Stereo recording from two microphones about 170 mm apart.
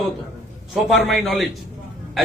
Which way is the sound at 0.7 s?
Centre (ahead or behind).